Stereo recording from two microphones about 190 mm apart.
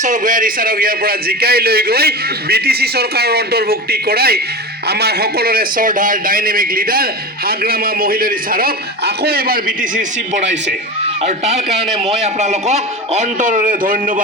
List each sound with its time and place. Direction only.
0.0 s a man's voice: 40° right (ahead or behind)